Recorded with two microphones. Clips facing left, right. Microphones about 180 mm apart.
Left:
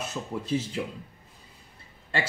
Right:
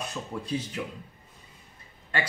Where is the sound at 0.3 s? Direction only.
25° left (ahead or behind).